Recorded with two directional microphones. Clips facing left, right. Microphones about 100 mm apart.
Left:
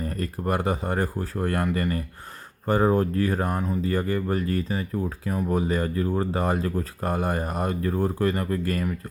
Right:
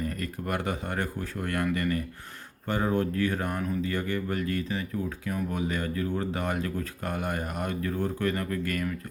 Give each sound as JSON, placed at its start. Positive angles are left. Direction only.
{"t": 0.0, "sound": "speech", "side_deg": 35}